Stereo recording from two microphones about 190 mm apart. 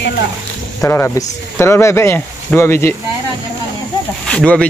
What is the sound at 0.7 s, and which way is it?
Speech, 15° left (ahead or behind).